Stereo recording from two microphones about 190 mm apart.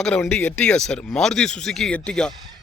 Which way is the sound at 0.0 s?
5° left (ahead or behind).